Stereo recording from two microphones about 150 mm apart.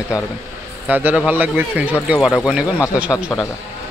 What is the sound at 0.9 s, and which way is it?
Speech, 10° right (ahead or behind).